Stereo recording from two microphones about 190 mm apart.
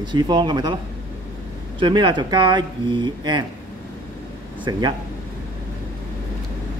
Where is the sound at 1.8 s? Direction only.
25° right (ahead or behind).